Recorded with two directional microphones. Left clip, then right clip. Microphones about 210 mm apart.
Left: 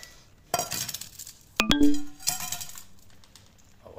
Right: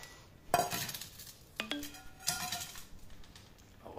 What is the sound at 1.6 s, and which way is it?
Music, 55° left (ahead or behind).